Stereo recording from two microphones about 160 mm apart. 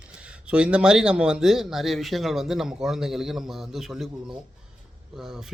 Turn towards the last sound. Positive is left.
turn(degrees=-5)  # may be behind; listen again after turning